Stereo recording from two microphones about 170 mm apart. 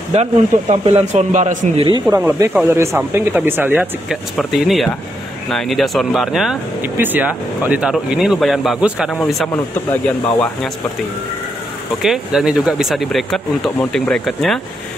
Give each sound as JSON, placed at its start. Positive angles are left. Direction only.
{"t": 0.1, "sound": "speech", "side_deg": -35}
{"t": 1.8, "sound": "speech", "side_deg": -25}
{"t": 2.1, "sound": "speech", "side_deg": -15}
{"t": 9.1, "sound": "speech", "side_deg": 10}
{"t": 12.0, "sound": "speech", "side_deg": 0}